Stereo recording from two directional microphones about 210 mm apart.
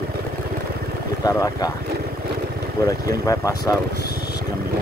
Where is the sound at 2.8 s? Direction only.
15° left (ahead or behind).